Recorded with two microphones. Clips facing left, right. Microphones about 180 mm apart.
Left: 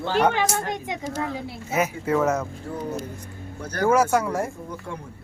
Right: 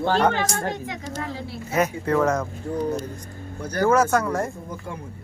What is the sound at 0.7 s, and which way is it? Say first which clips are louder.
Speech: left 2 dB; 20° left (ahead or behind).